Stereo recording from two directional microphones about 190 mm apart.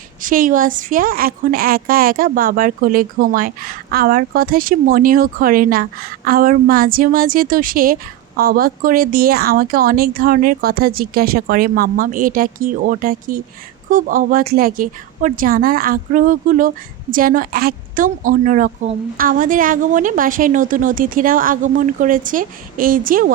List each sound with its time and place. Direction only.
0.2 s a woman's voice: 45° right (ahead or behind)